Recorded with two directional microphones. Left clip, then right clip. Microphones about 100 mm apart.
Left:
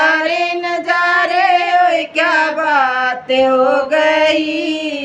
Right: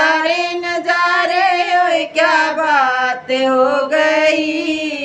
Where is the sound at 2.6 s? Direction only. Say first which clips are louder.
Even; 20° right (ahead or behind).